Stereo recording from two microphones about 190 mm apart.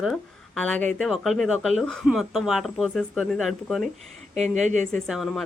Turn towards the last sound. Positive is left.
turn(degrees=0)  # may be behind; listen again after turning